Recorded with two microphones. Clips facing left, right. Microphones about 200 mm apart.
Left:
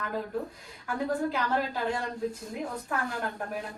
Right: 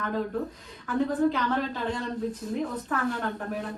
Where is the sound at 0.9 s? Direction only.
10° left (ahead or behind).